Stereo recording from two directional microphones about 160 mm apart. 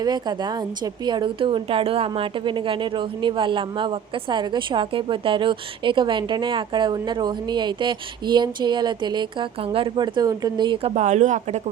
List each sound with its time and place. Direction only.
0.0 s a woman's voice: 25° right (ahead or behind)
10.9 s speech: 45° right (ahead or behind)